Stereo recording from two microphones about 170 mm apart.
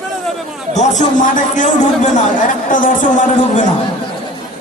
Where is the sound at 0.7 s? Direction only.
45° left (ahead or behind).